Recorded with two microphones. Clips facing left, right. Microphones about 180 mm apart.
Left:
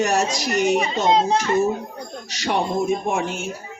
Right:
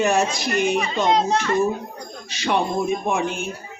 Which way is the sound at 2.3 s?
40° left (ahead or behind).